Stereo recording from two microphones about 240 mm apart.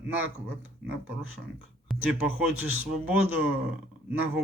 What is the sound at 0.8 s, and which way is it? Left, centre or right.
Speech, right.